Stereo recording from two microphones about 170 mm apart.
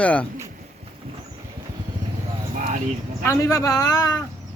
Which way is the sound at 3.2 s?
20° left (ahead or behind).